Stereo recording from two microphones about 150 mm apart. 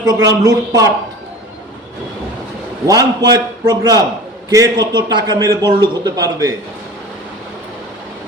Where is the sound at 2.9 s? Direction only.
25° right (ahead or behind).